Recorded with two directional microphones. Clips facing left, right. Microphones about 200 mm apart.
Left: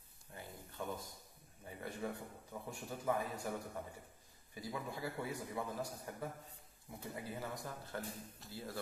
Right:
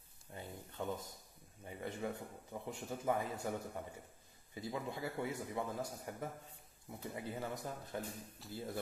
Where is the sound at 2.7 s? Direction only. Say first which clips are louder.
Right 1 dB; 20° right (ahead or behind).